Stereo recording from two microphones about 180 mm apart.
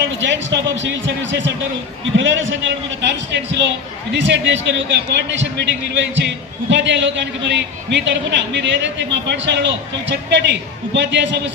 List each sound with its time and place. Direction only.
0.2 s a man's voice: 90° right